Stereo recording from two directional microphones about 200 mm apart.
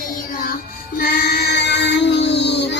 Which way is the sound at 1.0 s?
55° left (ahead or behind).